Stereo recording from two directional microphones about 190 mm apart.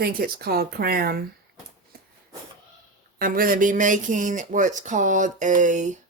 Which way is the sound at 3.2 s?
50° right (ahead or behind).